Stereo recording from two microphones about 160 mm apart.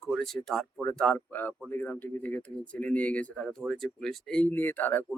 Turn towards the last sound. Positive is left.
turn(degrees=10)  # may be behind; listen again after turning